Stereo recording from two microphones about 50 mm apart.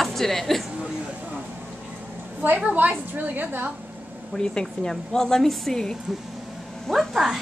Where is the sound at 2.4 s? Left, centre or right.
Right.